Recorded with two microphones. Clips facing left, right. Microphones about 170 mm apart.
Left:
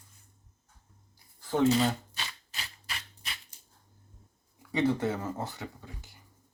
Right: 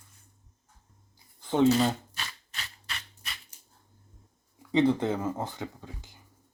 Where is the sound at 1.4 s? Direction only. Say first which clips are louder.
Right 3 dB; 20° right (ahead or behind).